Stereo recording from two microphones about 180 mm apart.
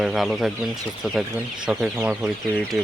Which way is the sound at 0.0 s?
Centre (ahead or behind).